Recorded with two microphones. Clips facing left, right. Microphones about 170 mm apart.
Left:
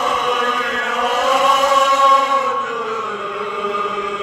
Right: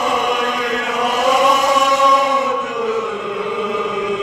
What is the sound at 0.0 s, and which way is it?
Chant, 10° right (ahead or behind).